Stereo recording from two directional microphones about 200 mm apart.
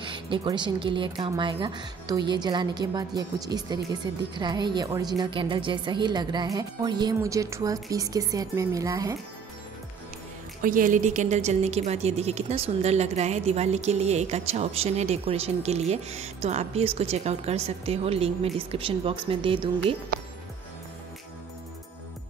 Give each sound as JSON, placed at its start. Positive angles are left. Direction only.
{"t": 0.0, "sound": "a woman's voice", "side_deg": -25}
{"t": 10.6, "sound": "a woman's voice", "side_deg": -45}